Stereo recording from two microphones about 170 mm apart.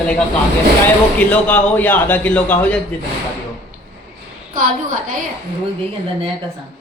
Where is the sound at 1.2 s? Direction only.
10° left (ahead or behind).